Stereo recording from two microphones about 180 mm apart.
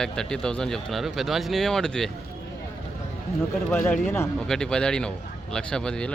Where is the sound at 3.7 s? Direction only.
15° left (ahead or behind).